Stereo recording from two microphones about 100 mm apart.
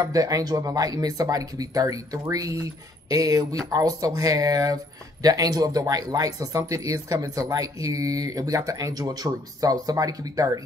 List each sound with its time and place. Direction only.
0.0 s speech: 35° right (ahead or behind)